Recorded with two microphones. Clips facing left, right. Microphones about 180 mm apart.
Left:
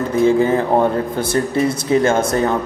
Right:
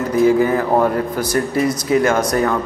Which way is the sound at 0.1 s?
25° left (ahead or behind).